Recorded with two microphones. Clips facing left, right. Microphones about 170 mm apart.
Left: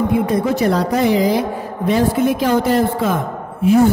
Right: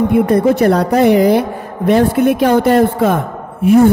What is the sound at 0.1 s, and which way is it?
A woman's voice, 60° right (ahead or behind).